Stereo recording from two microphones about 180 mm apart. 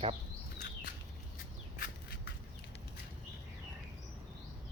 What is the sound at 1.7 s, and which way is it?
Squawk, 55° left (ahead or behind).